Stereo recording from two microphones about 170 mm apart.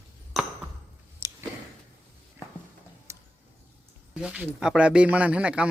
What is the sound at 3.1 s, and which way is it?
Tick-tock, 15° right (ahead or behind).